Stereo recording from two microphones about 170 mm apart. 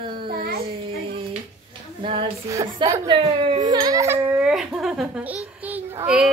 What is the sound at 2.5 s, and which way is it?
A woman's voice, 20° right (ahead or behind).